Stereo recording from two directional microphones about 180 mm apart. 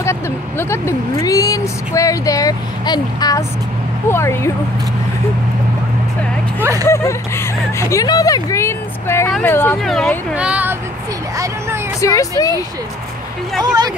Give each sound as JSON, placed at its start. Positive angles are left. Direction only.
{"t": 0.0, "sound": "speech", "side_deg": 15}
{"t": 6.6, "sound": "speech", "side_deg": -15}
{"t": 6.9, "sound": "speech", "side_deg": 15}
{"t": 9.8, "sound": "speech", "side_deg": 0}
{"t": 11.3, "sound": "a sound", "side_deg": -20}
{"t": 12.0, "sound": "speech", "side_deg": 20}